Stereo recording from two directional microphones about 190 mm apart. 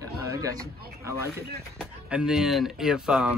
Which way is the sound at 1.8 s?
5° right (ahead or behind).